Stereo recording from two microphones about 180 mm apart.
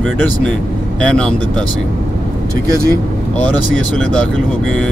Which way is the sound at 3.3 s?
5° left (ahead or behind).